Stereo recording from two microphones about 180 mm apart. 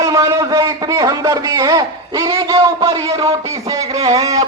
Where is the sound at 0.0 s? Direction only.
15° right (ahead or behind).